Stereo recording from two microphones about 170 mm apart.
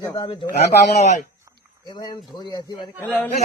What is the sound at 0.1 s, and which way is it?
Speech, 30° left (ahead or behind).